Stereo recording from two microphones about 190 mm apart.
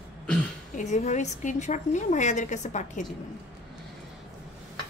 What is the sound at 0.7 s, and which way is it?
A woman's voice, 40° left (ahead or behind).